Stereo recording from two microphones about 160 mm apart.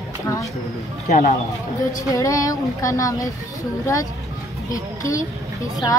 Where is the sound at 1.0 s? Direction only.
50° left (ahead or behind).